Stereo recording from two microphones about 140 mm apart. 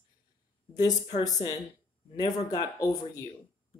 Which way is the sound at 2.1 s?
25° left (ahead or behind).